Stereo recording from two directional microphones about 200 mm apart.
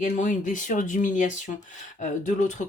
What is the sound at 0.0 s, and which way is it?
Speech, 40° left (ahead or behind).